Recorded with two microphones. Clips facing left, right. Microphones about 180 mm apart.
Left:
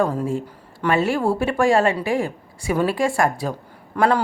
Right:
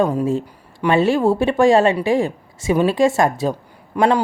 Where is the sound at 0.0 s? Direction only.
20° right (ahead or behind).